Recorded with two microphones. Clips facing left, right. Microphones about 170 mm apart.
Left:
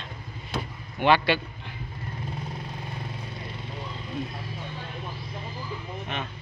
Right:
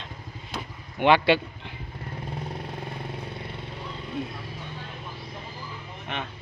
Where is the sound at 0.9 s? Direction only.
20° right (ahead or behind).